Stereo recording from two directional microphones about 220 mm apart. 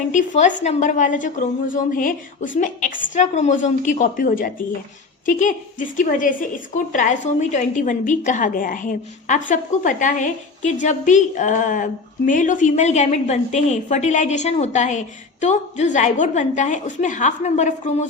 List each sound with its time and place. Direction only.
0.1 s a woman's voice: 35° left (ahead or behind)